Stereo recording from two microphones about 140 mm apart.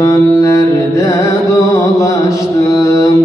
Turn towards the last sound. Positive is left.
turn(degrees=25)  # may be behind; listen again after turning